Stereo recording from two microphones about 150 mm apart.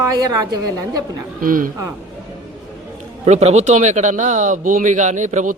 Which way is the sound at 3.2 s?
50° right (ahead or behind).